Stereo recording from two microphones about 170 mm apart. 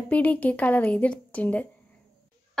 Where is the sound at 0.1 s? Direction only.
10° left (ahead or behind).